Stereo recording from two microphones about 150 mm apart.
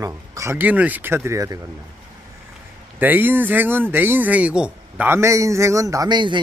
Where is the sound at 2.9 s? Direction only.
10° right (ahead or behind); by 6.4 s 30° right (ahead or behind).